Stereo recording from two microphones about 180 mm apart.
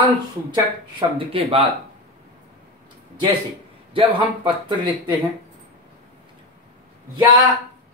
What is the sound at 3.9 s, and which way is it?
Speech, 25° right (ahead or behind).